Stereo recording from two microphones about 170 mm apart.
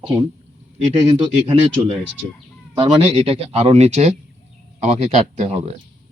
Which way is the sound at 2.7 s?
35° right (ahead or behind).